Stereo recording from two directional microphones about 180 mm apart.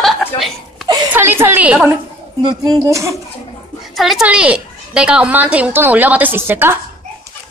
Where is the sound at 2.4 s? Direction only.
20° right (ahead or behind).